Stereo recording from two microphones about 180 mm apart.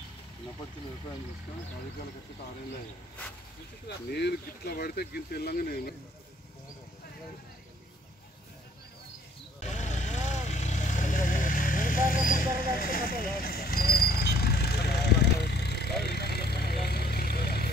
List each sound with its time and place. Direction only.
3.8 s speech: 65° left (ahead or behind)
9.6 s vehicle: 40° left (ahead or behind); by 17.6 s 60° left (ahead or behind)